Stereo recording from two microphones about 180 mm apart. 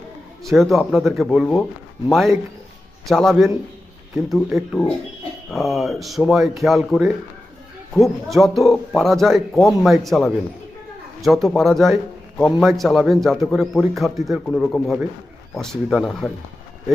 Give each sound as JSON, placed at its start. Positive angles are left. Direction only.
{"t": 0.4, "sound": "speech", "side_deg": 0}
{"t": 5.5, "sound": "speech", "side_deg": 0}